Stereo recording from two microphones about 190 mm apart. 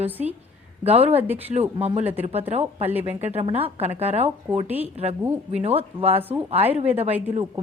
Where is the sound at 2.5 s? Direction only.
35° right (ahead or behind).